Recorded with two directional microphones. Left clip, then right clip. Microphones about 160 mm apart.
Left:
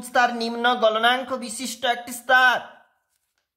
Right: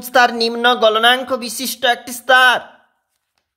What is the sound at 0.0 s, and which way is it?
Speech, 40° right (ahead or behind).